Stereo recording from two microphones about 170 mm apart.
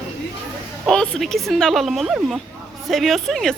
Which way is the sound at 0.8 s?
5° left (ahead or behind).